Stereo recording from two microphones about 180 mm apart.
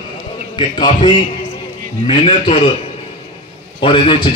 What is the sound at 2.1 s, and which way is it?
Speech, 30° left (ahead or behind).